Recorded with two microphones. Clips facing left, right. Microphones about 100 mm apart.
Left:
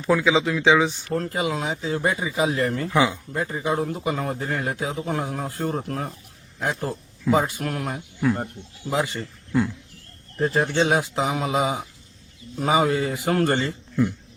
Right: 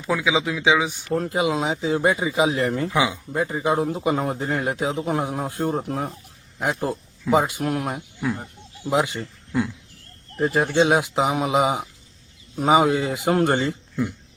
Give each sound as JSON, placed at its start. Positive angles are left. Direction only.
{"t": 0.0, "sound": "a man's voice", "side_deg": -5}
{"t": 2.9, "sound": "speech", "side_deg": -5}
{"t": 3.6, "sound": "a man's voice", "side_deg": -20}
{"t": 9.2, "sound": "speech", "side_deg": -5}
{"t": 10.8, "sound": "a man's voice", "side_deg": -15}